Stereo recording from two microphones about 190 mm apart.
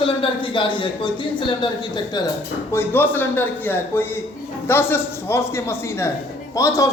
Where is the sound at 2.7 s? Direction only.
10° left (ahead or behind).